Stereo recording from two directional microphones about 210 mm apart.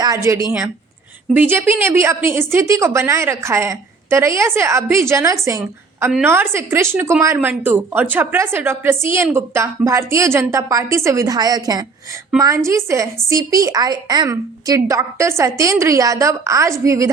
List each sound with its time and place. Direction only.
0.0 s a woman's voice: 15° right (ahead or behind)